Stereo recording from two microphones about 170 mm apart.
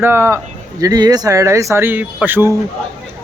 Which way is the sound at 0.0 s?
15° right (ahead or behind).